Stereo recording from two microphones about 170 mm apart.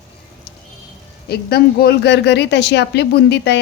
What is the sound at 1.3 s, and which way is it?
Speech, 65° left (ahead or behind).